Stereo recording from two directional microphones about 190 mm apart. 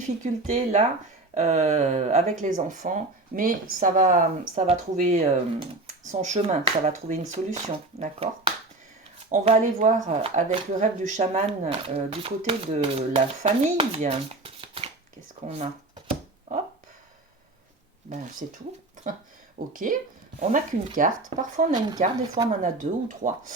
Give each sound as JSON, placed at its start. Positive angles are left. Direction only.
{"t": 0.2, "sound": "speech", "side_deg": -40}
{"t": 18.1, "sound": "speech", "side_deg": -35}